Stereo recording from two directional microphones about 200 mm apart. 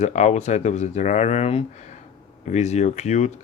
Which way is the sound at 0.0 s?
35° left (ahead or behind).